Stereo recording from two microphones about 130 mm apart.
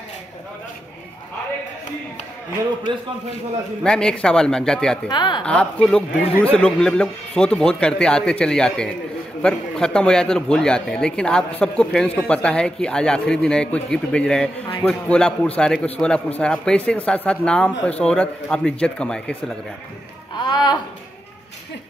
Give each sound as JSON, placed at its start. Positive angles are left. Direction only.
{"t": 3.8, "sound": "speech", "side_deg": 5}
{"t": 5.0, "sound": "a woman's voice", "side_deg": 35}
{"t": 5.4, "sound": "a man's voice", "side_deg": 10}
{"t": 20.3, "sound": "a woman's voice", "side_deg": 35}